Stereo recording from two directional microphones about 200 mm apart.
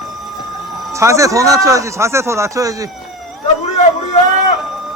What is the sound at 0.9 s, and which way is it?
Speech, 15° right (ahead or behind).